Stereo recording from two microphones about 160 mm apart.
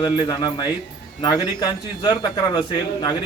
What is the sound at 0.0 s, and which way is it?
Speech, 25° left (ahead or behind).